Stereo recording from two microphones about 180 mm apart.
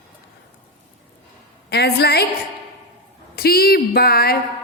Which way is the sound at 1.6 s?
65° left (ahead or behind).